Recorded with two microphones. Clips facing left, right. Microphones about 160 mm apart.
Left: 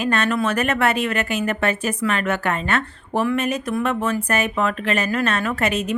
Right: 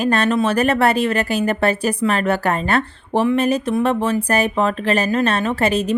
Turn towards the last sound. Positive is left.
turn(degrees=-30)  # may be behind; listen again after turning